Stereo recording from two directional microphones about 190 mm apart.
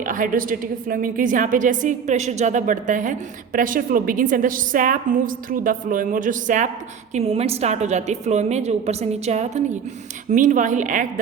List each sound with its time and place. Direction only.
0.0 s a woman's voice: 45° right (ahead or behind)
7.1 s a woman's voice: 30° right (ahead or behind)